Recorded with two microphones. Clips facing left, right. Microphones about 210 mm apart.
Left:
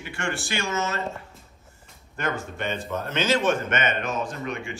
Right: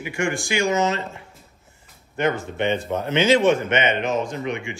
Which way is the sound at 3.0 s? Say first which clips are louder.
Right 6 dB; 15° right (ahead or behind).